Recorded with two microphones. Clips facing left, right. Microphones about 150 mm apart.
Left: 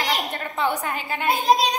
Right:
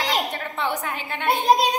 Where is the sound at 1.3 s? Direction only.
55° right (ahead or behind).